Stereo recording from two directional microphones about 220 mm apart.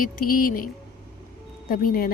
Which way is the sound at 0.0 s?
40° left (ahead or behind).